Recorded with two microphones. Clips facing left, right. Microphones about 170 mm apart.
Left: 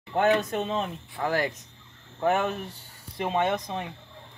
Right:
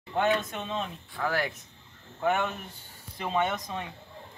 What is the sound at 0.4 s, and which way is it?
Speech, 35° left (ahead or behind).